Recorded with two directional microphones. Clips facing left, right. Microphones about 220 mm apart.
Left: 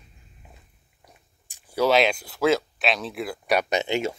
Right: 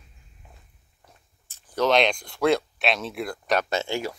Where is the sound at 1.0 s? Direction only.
15° left (ahead or behind).